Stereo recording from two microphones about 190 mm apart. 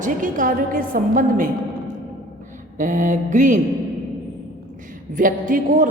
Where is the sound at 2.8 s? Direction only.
40° right (ahead or behind).